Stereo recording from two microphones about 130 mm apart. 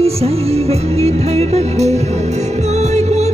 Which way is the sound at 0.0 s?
50° right (ahead or behind).